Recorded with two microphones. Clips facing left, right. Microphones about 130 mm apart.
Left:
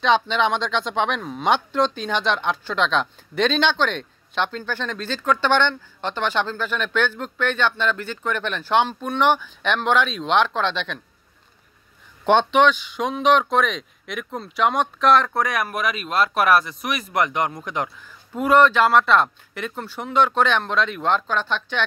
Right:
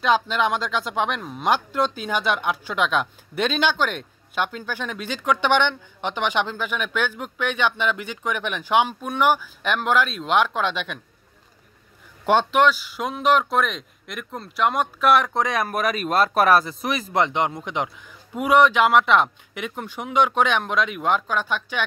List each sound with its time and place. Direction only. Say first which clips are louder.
0.0 s speech: left 1 dB; 5° right (ahead or behind)
12.3 s speech: left 2 dB; 5° right (ahead or behind)
15.4 s speech: right 1 dB; 25° right (ahead or behind)
15.7 s speech: right 2 dB; 40° right (ahead or behind); by 21.8 s 10° right (ahead or behind)